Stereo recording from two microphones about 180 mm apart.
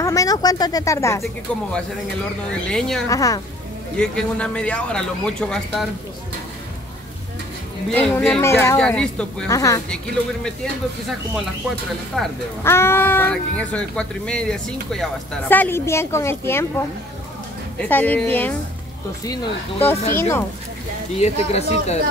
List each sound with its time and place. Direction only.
0.0 s speech: 20° left (ahead or behind)
2.7 s speech: 5° left (ahead or behind)
3.1 s a woman's voice: 20° left (ahead or behind)
3.9 s speech: 5° left (ahead or behind)
7.9 s speech: 5° left (ahead or behind)
9.5 s speech: 15° left (ahead or behind)
10.4 s speech: centre (ahead or behind)
12.6 s speech: 15° left (ahead or behind)
20.1 s speech: 15° left (ahead or behind)
21.2 s speech: 35° left (ahead or behind)